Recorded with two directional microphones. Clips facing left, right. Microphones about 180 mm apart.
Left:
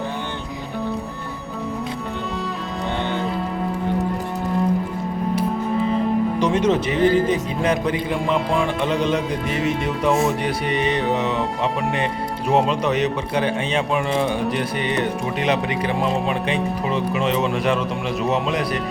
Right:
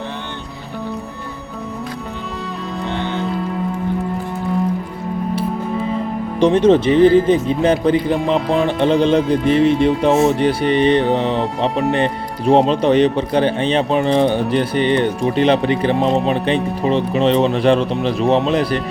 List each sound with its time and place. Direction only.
6.4 s speech: 30° right (ahead or behind)